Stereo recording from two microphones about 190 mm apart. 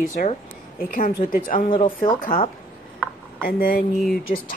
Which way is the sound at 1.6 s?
25° left (ahead or behind).